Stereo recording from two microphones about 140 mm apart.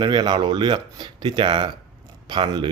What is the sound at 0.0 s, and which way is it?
Speech, 30° right (ahead or behind).